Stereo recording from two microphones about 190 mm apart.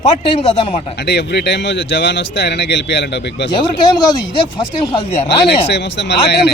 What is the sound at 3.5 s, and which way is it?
Speech, 25° left (ahead or behind).